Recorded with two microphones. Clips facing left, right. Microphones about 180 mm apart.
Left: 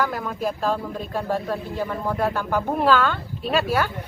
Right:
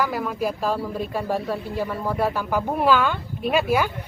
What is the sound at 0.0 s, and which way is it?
A man's voice, 5° right (ahead or behind).